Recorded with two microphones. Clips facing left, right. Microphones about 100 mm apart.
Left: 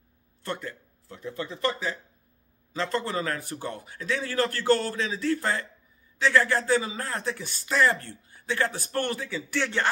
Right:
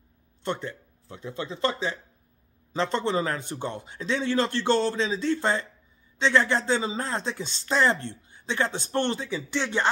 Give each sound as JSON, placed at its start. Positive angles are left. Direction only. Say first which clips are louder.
{"t": 0.4, "sound": "speech", "louder": "right 3 dB", "side_deg": -25}